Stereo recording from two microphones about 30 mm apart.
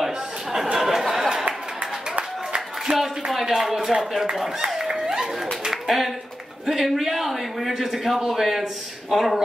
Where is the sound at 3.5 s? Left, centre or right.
Centre.